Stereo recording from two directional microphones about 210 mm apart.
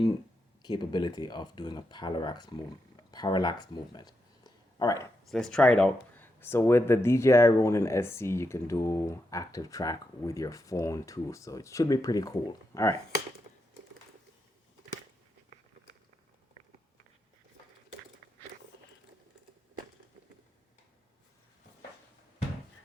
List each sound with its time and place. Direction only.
0.6 s speech: 20° left (ahead or behind)
5.3 s speech: 5° left (ahead or behind)